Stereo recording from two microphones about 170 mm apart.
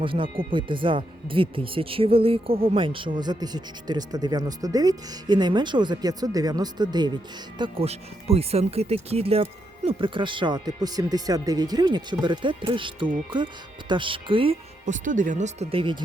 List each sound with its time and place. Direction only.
0.0 s speech: 30° right (ahead or behind)
7.6 s speech: 35° right (ahead or behind)
14.8 s speech: 50° right (ahead or behind); by 16.0 s 30° right (ahead or behind)